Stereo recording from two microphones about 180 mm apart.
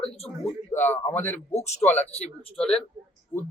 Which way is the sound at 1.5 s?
40° left (ahead or behind).